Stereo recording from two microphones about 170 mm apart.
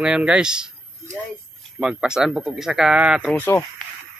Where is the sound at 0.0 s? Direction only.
5° right (ahead or behind).